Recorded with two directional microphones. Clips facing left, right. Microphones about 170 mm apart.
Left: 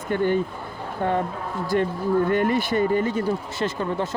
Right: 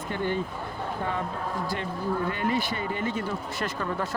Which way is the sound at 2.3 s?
50° left (ahead or behind).